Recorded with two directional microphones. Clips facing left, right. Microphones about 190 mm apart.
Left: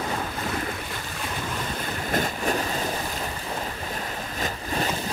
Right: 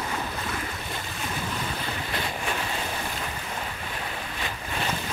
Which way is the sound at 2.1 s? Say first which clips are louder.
Left 8 dB; 45° left (ahead or behind).